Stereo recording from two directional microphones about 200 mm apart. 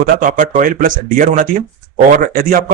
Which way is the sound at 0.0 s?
40° right (ahead or behind).